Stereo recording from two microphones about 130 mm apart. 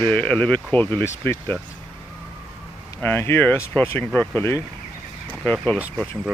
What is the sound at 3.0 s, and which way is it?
Speech, 15° left (ahead or behind).